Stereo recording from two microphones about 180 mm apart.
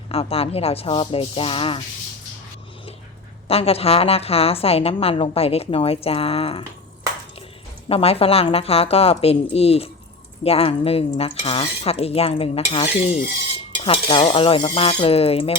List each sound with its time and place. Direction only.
0.1 s a woman's voice: 35° left (ahead or behind)
3.5 s a woman's voice: 35° left (ahead or behind)
7.9 s a woman's voice: 30° left (ahead or behind)